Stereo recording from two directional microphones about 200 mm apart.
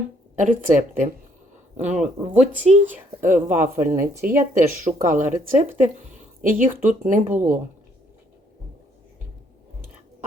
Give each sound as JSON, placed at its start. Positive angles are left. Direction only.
{"t": 0.3, "sound": "speech", "side_deg": -40}